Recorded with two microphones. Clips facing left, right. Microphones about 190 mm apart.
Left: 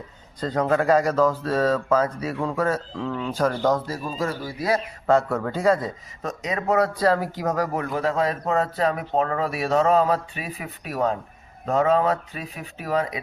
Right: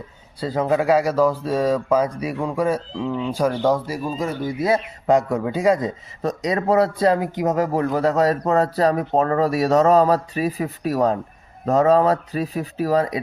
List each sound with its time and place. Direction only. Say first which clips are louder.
0.3 s speech: right 2 dB; 5° right (ahead or behind)
6.2 s speech: right 5 dB; 35° right (ahead or behind)